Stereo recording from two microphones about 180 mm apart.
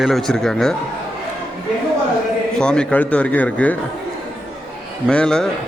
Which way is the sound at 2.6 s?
5° left (ahead or behind).